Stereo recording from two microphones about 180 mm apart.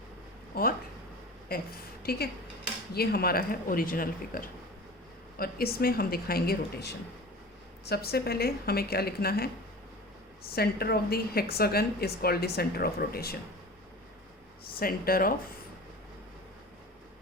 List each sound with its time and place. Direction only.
0.5 s a woman's voice: 55° left (ahead or behind)
10.5 s a woman's voice: 60° left (ahead or behind)
14.6 s a woman's voice: 55° left (ahead or behind)